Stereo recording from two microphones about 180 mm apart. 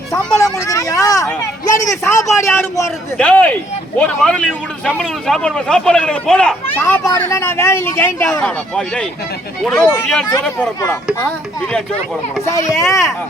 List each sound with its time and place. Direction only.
0.3 s a sound: 20° left (ahead or behind)
1.7 s speech: 15° left (ahead or behind)
8.4 s speech: 5° left (ahead or behind)